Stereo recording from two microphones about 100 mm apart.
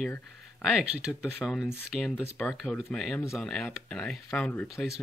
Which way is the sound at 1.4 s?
Centre (ahead or behind).